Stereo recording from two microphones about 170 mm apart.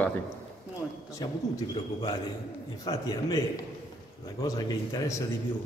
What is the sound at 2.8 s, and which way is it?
A man's voice, 20° left (ahead or behind).